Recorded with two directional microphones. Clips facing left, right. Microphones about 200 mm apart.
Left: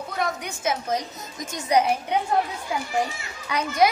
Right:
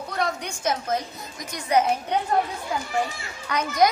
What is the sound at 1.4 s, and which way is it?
Speech, 45° left (ahead or behind).